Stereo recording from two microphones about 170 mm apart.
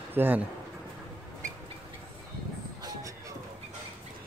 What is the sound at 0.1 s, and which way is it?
Speech, 10° right (ahead or behind).